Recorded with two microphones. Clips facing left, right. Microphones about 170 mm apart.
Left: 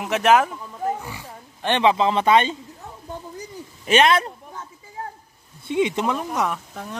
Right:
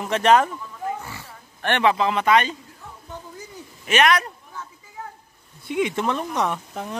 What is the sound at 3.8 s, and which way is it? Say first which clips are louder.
Speech: left 2 dB; 30° left (ahead or behind).